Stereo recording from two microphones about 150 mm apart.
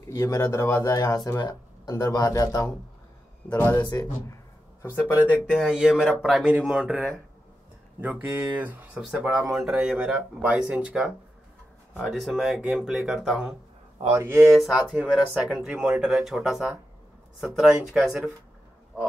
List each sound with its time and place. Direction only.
0.1 s speech: 20° left (ahead or behind)
3.5 s speech: 10° left (ahead or behind)
3.8 s speech: 20° left (ahead or behind)
5.6 s speech: 5° right (ahead or behind)
14.1 s speech: 15° right (ahead or behind)
14.4 s speech: 5° right (ahead or behind)